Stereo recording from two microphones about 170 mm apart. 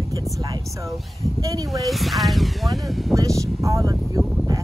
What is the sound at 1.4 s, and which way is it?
Speech, 20° right (ahead or behind).